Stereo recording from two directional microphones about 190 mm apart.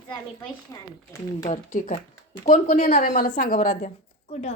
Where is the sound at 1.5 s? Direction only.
35° left (ahead or behind).